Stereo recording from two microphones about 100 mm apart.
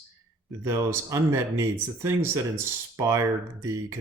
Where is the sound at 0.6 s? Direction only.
30° right (ahead or behind).